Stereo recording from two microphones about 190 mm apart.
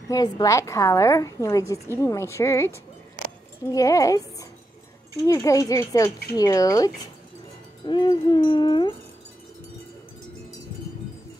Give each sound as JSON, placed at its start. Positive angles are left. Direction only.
{"t": 0.1, "sound": "a woman's voice", "side_deg": 20}
{"t": 6.3, "sound": "wind chime", "side_deg": 20}